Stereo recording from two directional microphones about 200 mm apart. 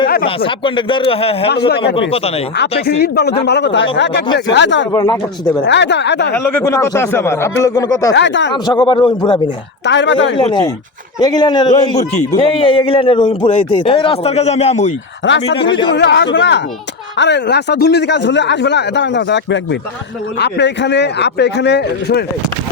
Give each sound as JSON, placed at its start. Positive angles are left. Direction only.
{"t": 0.3, "sound": "a man's voice", "side_deg": 25}
{"t": 1.5, "sound": "speech", "side_deg": 55}
{"t": 2.0, "sound": "a man's voice", "side_deg": 30}
{"t": 2.8, "sound": "a man's voice", "side_deg": 55}
{"t": 4.9, "sound": "a man's voice", "side_deg": 20}
{"t": 5.6, "sound": "a man's voice", "side_deg": 60}
{"t": 6.3, "sound": "speech", "side_deg": 10}
{"t": 8.1, "sound": "a man's voice", "side_deg": 65}
{"t": 8.6, "sound": "a man's voice", "side_deg": 20}
{"t": 9.8, "sound": "a man's voice", "side_deg": 65}
{"t": 10.3, "sound": "a man's voice", "side_deg": 25}
{"t": 15.5, "sound": "a man's voice", "side_deg": 25}
{"t": 15.9, "sound": "a man's voice", "side_deg": 60}